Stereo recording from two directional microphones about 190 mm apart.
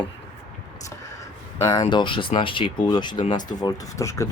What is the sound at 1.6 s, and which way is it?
Speech, 20° left (ahead or behind).